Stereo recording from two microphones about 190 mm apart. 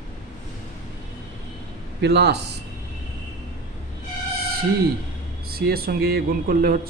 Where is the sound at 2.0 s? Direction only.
60° right (ahead or behind).